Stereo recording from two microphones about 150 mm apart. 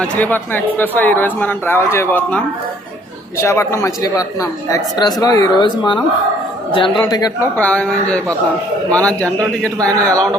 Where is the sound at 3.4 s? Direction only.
20° left (ahead or behind).